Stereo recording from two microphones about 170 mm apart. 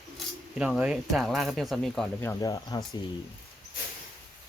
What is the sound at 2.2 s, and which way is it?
Speech, 15° left (ahead or behind).